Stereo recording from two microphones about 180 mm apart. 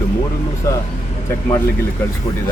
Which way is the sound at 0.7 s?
15° left (ahead or behind).